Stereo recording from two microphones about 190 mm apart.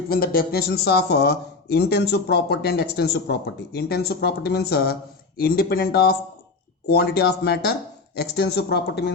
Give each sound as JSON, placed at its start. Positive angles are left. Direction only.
{"t": 0.1, "sound": "speech", "side_deg": 50}